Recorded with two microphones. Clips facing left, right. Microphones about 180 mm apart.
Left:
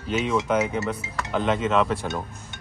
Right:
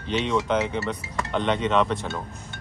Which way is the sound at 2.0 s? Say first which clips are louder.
Left 2 dB; 20° left (ahead or behind).